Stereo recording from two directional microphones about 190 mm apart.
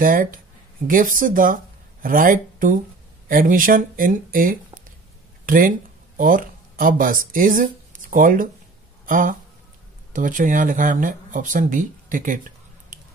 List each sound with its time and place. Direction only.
0.0 s speech: 45° right (ahead or behind)